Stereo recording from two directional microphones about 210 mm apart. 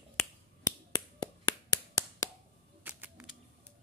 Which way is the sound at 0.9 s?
20° left (ahead or behind).